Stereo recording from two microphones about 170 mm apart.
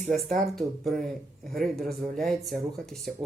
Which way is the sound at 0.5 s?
Centre (ahead or behind).